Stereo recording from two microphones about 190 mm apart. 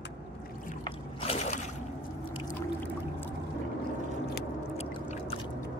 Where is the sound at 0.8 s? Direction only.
30° left (ahead or behind).